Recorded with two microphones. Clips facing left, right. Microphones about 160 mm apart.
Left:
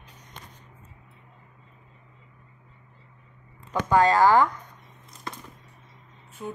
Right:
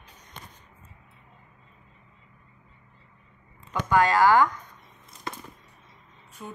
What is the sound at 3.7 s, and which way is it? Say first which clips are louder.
Speech: left 2 dB; 30° left (ahead or behind).